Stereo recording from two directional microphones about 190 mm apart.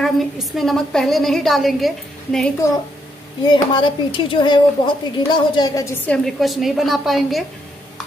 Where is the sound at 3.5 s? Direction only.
25° left (ahead or behind); by 7.4 s centre (ahead or behind).